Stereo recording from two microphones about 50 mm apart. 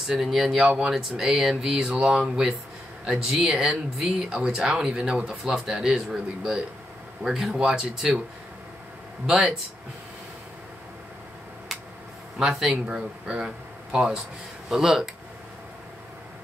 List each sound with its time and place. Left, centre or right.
0.0 s speech: centre
12.4 s speech: centre